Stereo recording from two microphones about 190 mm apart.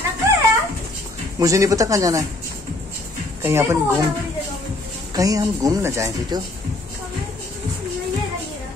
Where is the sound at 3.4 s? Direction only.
15° right (ahead or behind).